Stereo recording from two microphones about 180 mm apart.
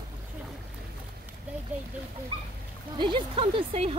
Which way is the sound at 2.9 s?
25° right (ahead or behind).